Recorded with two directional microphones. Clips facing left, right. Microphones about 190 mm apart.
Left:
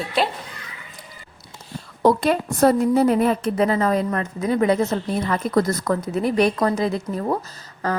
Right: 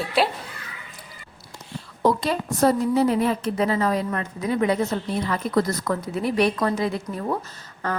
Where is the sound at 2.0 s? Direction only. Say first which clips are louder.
Left 4 dB; 55° left (ahead or behind).